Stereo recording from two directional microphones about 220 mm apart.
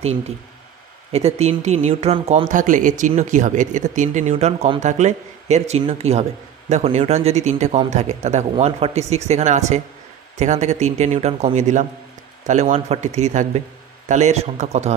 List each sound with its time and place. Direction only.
1.1 s speech: 30° right (ahead or behind)